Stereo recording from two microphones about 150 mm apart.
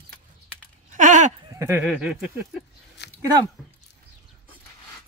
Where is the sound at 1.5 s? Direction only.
15° right (ahead or behind).